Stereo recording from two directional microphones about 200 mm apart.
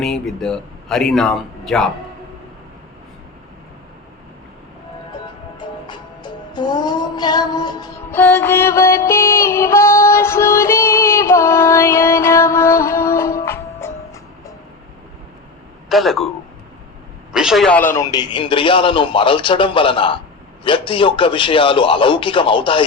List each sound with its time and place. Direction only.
0.0 s speech: centre (ahead or behind)
5.5 s music: 20° left (ahead or behind)
8.1 s music: 10° left (ahead or behind)
15.9 s speech: centre (ahead or behind)
17.3 s a man's voice: centre (ahead or behind); by 22.8 s 25° left (ahead or behind)